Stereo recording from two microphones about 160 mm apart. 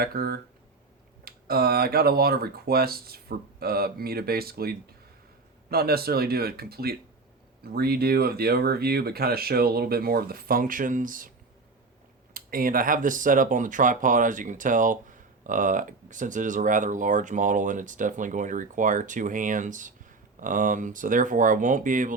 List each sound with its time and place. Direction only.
0.0 s speech: 70° right (ahead or behind)
12.3 s speech: 65° right (ahead or behind)